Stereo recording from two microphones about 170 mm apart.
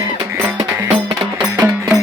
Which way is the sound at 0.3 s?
15° right (ahead or behind).